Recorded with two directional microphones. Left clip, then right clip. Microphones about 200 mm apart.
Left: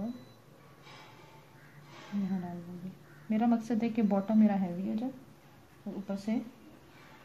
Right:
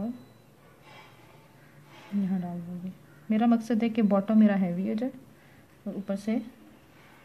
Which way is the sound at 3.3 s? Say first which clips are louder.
Right 5 dB; 25° right (ahead or behind).